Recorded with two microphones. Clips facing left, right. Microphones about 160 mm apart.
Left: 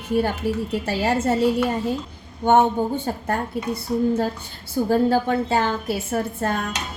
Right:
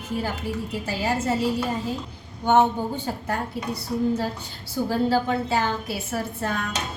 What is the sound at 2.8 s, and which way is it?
Speech, 55° left (ahead or behind).